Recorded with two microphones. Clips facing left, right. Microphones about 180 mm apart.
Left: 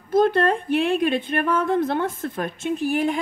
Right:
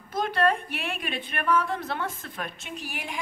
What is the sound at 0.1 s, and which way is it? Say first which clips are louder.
A woman's voice: left 7 dB; 55° left (ahead or behind).